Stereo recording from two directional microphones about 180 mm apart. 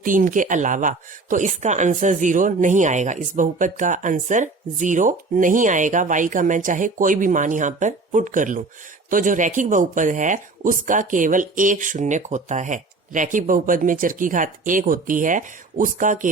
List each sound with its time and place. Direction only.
0.0 s speech: 50° right (ahead or behind)